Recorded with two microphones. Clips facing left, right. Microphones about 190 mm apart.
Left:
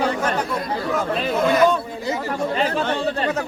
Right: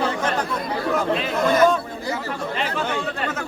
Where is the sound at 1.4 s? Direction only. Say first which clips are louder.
Even; centre (ahead or behind).